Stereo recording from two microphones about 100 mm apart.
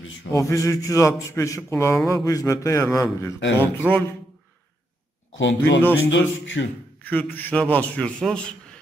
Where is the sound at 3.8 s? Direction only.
15° right (ahead or behind).